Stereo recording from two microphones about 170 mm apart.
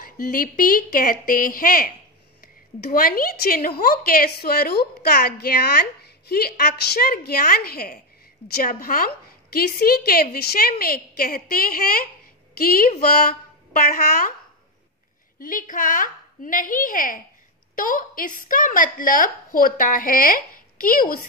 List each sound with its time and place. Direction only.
0.0 s a woman's voice: 60° left (ahead or behind)
15.3 s a woman's voice: 55° left (ahead or behind)